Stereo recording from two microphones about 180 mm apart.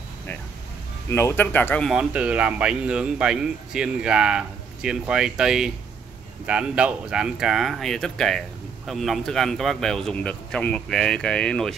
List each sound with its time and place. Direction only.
1.1 s speech: 10° left (ahead or behind)
1.9 s speech: 5° right (ahead or behind)